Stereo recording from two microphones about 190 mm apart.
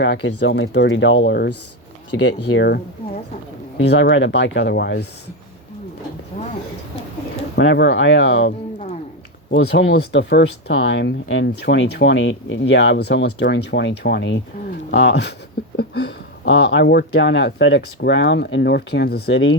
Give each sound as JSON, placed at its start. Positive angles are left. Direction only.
{"t": 0.0, "sound": "speech", "side_deg": 70}
{"t": 6.3, "sound": "a sound", "side_deg": 40}
{"t": 7.5, "sound": "speech", "side_deg": 70}